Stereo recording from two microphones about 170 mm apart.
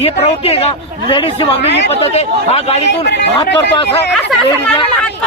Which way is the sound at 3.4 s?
80° left.